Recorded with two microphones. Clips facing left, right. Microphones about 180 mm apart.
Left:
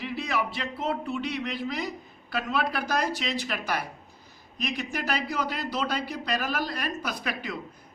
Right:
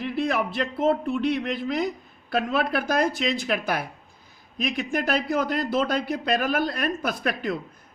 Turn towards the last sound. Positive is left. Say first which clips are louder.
# right 6 dB
turn(degrees=-55)  # may be behind; listen again after turning